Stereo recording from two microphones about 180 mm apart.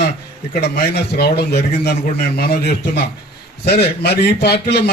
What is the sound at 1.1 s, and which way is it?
A man's voice, 65° left (ahead or behind).